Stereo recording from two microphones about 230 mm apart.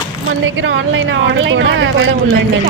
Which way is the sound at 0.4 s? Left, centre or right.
Right.